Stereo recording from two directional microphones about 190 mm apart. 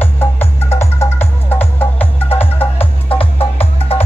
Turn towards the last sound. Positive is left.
turn(degrees=30)  # may be behind; listen again after turning